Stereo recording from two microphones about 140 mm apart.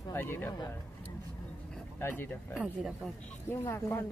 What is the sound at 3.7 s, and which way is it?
Speech, 15° left (ahead or behind).